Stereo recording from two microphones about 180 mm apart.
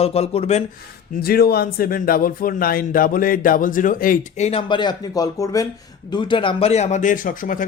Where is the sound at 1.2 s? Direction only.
60° left (ahead or behind).